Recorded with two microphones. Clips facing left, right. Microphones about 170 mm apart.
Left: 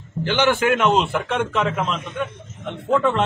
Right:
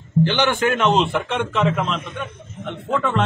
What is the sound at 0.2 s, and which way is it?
A man's voice, 5° left (ahead or behind).